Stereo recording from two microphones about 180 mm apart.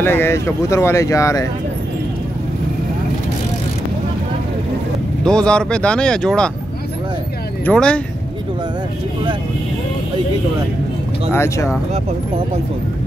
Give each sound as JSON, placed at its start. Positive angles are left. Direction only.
{"t": 0.0, "sound": "speech", "side_deg": 10}
{"t": 5.2, "sound": "speech", "side_deg": 5}
{"t": 7.6, "sound": "speech", "side_deg": 5}
{"t": 11.3, "sound": "speech", "side_deg": 15}